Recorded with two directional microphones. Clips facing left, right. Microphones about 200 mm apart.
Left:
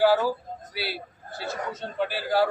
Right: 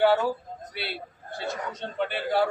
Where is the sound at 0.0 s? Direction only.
Centre (ahead or behind).